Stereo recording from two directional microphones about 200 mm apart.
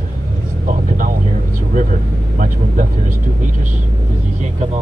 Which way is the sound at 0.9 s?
40° right (ahead or behind).